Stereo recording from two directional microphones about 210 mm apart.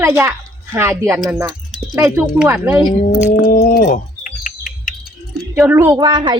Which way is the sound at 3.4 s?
40° left (ahead or behind).